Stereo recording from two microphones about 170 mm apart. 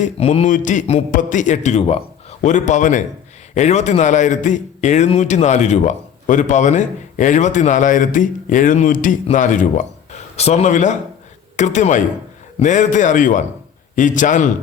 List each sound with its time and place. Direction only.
0.0 s a man's voice: 40° left (ahead or behind)